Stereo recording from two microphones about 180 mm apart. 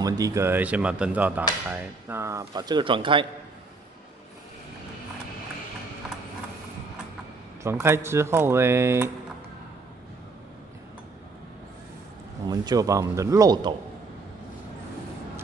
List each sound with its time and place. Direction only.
0.0 s speech: 20° right (ahead or behind)
7.6 s speech: 15° right (ahead or behind)
12.4 s speech: 20° right (ahead or behind)